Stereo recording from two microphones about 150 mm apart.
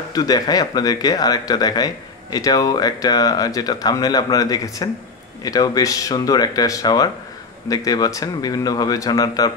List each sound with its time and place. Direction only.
0.1 s speech: 25° left (ahead or behind)